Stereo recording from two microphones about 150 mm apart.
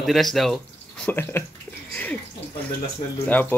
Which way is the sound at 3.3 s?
10° left (ahead or behind).